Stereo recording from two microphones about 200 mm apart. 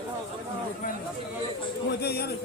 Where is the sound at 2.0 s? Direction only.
50° left (ahead or behind).